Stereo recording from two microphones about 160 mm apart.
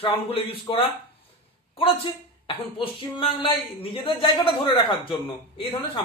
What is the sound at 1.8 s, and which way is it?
A man's voice, 35° left (ahead or behind).